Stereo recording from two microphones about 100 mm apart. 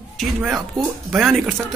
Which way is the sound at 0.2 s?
Centre (ahead or behind).